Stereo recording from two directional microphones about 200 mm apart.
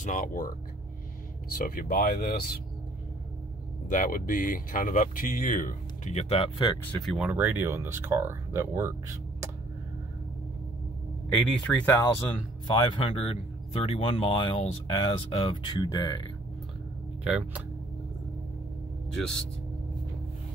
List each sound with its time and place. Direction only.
0.0 s speech: 40° left (ahead or behind)
1.6 s speech: 50° left (ahead or behind)
3.9 s speech: 45° left (ahead or behind); by 6.8 s 25° left (ahead or behind)
6.9 s speech: centre (ahead or behind)
11.2 s speech: 5° left (ahead or behind)
12.6 s speech: 25° left (ahead or behind)
17.2 s speech: 5° right (ahead or behind)